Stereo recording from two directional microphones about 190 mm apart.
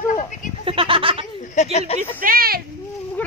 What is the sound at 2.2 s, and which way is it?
Speech, 50° right (ahead or behind).